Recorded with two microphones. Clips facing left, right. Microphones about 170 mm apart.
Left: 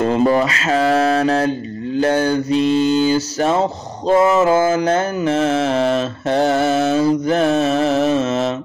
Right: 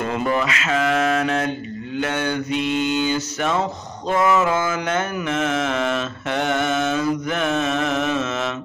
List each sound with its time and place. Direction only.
0.0 s mantra: 30° left (ahead or behind)